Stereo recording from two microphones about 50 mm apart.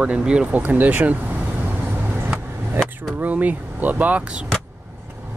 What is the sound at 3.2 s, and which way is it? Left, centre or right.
Speech, right.